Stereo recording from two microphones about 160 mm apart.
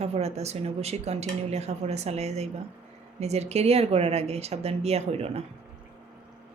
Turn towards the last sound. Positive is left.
turn(degrees=-40)  # may be behind; listen again after turning